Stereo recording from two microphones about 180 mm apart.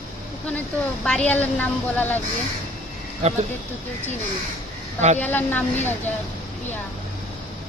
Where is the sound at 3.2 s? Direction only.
40° right (ahead or behind).